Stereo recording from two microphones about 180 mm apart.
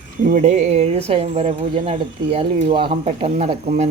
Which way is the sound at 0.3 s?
45° right (ahead or behind).